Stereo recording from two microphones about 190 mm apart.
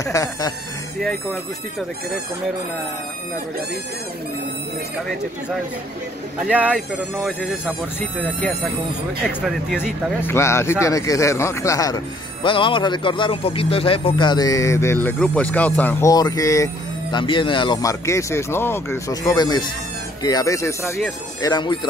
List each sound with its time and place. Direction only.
0.0 s speech: 15° left (ahead or behind)
6.4 s speech: 5° right (ahead or behind)
10.2 s speech: 15° left (ahead or behind)